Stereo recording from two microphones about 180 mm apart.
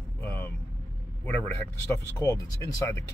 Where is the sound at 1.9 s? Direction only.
15° left (ahead or behind).